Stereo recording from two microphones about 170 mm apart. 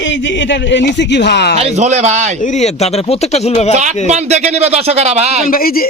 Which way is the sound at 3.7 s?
45° right (ahead or behind).